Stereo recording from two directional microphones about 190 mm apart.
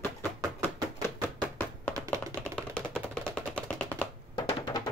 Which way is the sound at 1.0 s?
10° left (ahead or behind).